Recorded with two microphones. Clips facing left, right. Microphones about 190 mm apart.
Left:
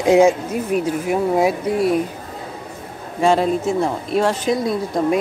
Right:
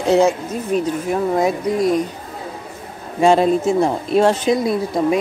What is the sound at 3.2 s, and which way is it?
A woman's voice, 20° right (ahead or behind).